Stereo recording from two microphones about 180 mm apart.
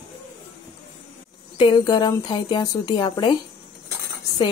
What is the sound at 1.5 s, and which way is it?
A woman's voice, 25° left (ahead or behind).